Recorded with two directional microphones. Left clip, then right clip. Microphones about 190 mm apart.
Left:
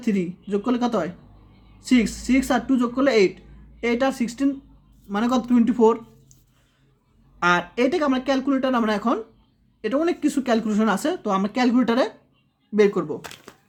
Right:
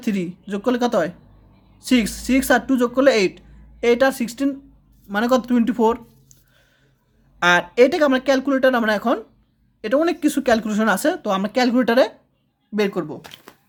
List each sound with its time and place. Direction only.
0.0 s speech: 30° right (ahead or behind)
7.3 s speech: 30° right (ahead or behind)